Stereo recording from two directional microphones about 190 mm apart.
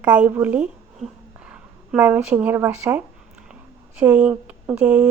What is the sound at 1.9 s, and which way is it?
A woman's voice, 10° right (ahead or behind).